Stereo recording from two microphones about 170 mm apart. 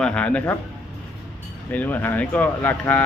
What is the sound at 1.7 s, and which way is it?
A man's voice, 10° left (ahead or behind).